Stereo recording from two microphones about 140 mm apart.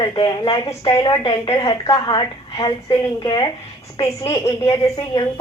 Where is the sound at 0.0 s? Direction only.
35° left (ahead or behind).